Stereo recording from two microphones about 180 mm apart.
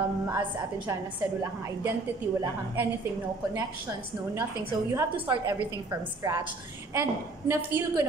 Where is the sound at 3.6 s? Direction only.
15° right (ahead or behind).